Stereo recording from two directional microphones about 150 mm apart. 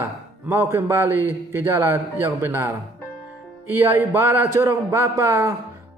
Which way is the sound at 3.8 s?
15° right (ahead or behind).